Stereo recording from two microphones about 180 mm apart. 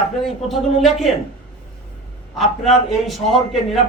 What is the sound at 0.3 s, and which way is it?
Speech, centre (ahead or behind).